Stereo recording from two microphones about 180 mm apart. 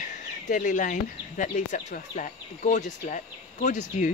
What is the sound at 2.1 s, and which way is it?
Speech, 45° left (ahead or behind).